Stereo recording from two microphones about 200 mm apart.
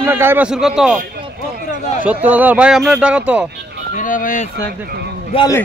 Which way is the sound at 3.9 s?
40° left (ahead or behind).